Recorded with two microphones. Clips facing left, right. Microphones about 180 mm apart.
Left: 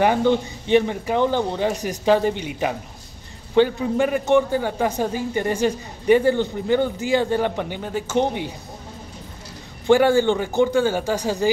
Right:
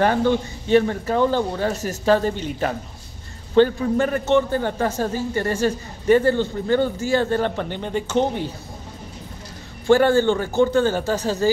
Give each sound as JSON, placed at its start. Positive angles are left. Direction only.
{"t": 0.0, "sound": "a man's voice", "side_deg": 15}
{"t": 9.8, "sound": "a man's voice", "side_deg": 15}